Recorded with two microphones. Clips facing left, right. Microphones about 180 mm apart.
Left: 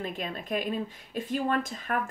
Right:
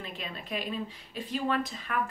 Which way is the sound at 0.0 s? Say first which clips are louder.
Left 6 dB; 45° left (ahead or behind).